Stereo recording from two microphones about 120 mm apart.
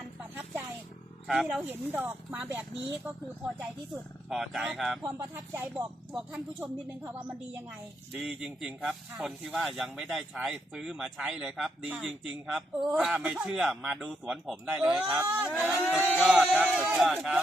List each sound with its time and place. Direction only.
1.3 s speech: 5° right (ahead or behind)
1.6 s speech: 15° right (ahead or behind)
5.0 s speech: 15° right (ahead or behind)
8.1 s speech: 5° right (ahead or behind)